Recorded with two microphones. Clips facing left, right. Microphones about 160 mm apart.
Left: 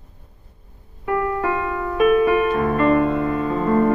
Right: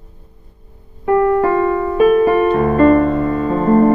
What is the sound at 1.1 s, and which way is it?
Music, 35° right (ahead or behind).